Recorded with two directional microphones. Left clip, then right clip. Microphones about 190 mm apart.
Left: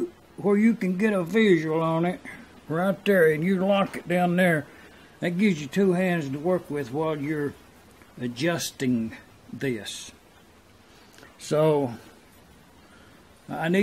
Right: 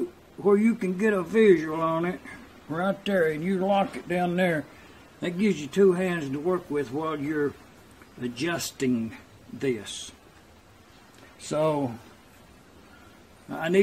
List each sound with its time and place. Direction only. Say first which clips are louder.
0.5 s speech: right 1 dB; 45° left (ahead or behind)
2.7 s speech: left 3 dB; 50° left (ahead or behind)
8.2 s speech: left 2 dB; 40° left (ahead or behind)
11.4 s speech: left 4 dB; 50° left (ahead or behind)
13.5 s a man's voice: left 1 dB; 45° left (ahead or behind)